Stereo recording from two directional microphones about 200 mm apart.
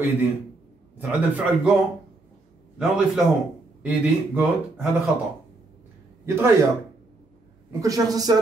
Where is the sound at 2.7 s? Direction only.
5° right (ahead or behind).